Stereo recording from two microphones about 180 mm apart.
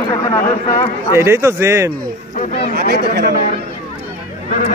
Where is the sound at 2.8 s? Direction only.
60° right (ahead or behind).